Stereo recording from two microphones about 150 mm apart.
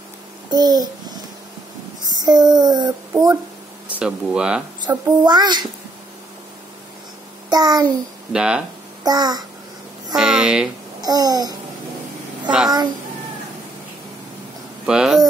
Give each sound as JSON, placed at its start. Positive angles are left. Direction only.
{"t": 0.5, "sound": "babbling", "side_deg": -25}
{"t": 2.0, "sound": "a child's voice", "side_deg": -25}
{"t": 3.9, "sound": "speech", "side_deg": -5}
{"t": 4.8, "sound": "a child's voice", "side_deg": -30}
{"t": 7.4, "sound": "a child's voice", "side_deg": -25}
{"t": 8.3, "sound": "speech", "side_deg": -5}
{"t": 9.0, "sound": "a child's voice", "side_deg": -25}
{"t": 10.1, "sound": "speech", "side_deg": -5}
{"t": 11.0, "sound": "babbling", "side_deg": -25}
{"t": 12.4, "sound": "a child's voice", "side_deg": -5}
{"t": 14.9, "sound": "speech", "side_deg": -5}